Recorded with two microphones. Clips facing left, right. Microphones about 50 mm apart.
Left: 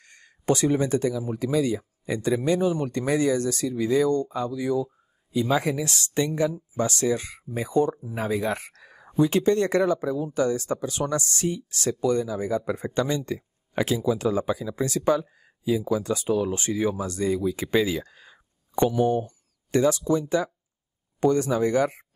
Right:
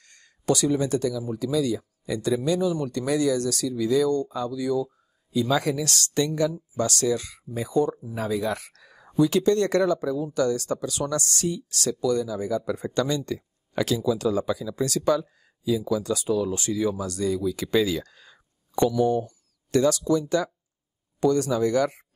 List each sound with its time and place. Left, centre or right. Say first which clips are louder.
0.0 s speech: even; left